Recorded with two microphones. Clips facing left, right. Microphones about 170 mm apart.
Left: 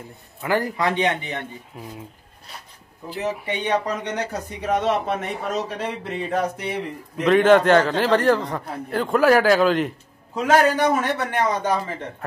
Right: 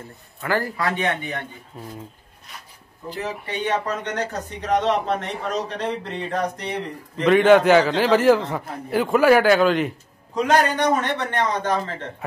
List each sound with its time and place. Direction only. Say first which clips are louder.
0.4 s speech: left 2 dB; 20° left (ahead or behind)
3.5 s speech: right 2 dB; 15° left (ahead or behind)